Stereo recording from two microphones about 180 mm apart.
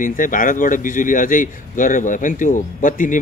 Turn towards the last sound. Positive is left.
turn(degrees=45)  # may be behind; listen again after turning